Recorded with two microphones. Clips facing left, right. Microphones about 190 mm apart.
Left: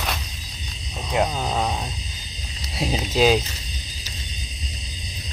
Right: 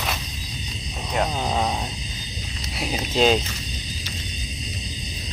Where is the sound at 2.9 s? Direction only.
5° left (ahead or behind).